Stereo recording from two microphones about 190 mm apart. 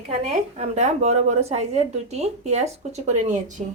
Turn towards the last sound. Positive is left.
turn(degrees=-40)  # may be behind; listen again after turning